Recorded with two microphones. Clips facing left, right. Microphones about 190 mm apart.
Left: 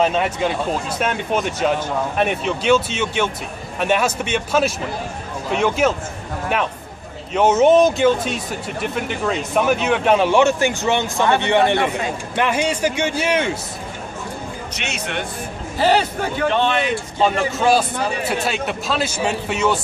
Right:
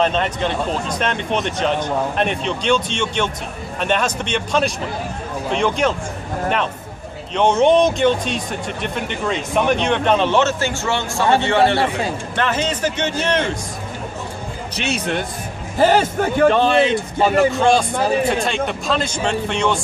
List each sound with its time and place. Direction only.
0.0 s speech: 10° left (ahead or behind)
7.3 s speech: 5° left (ahead or behind)
14.8 s speech: 35° right (ahead or behind)
15.8 s a man's voice: 45° right (ahead or behind)
17.2 s speech: centre (ahead or behind)